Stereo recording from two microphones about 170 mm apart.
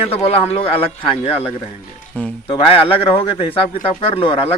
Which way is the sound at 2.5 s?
35° left (ahead or behind).